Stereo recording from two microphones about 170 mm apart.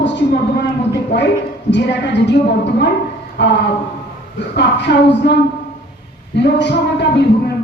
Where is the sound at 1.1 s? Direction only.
90° left.